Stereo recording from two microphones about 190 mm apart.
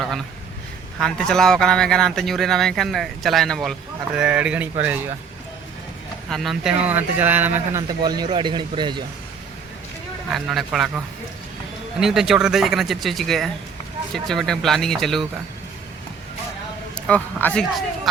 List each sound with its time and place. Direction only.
0.9 s speech: 5° left (ahead or behind)
6.3 s speech: centre (ahead or behind); by 9.0 s 25° right (ahead or behind)
10.3 s speech: centre (ahead or behind)
17.1 s speech: 5° left (ahead or behind)